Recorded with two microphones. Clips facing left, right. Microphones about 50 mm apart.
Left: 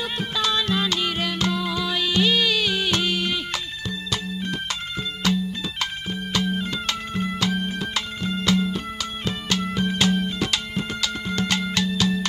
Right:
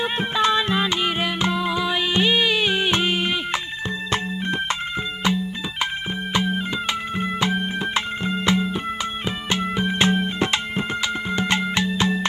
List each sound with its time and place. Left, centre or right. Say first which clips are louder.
0.0 s music: right 5 dB; right